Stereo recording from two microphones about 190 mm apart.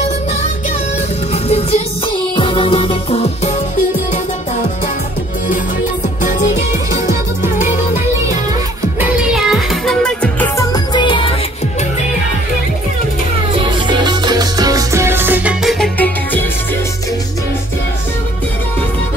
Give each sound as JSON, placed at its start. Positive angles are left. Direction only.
{"t": 1.3, "sound": "music", "side_deg": 35}
{"t": 9.0, "sound": "music", "side_deg": -5}
{"t": 10.6, "sound": "music", "side_deg": 20}
{"t": 13.8, "sound": "music", "side_deg": -25}